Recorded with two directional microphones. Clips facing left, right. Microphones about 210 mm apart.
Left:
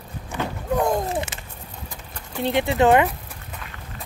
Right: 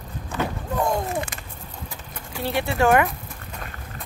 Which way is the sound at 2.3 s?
20° left (ahead or behind).